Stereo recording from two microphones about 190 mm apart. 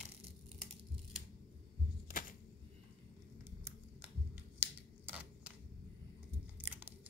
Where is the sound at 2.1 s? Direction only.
45° left (ahead or behind).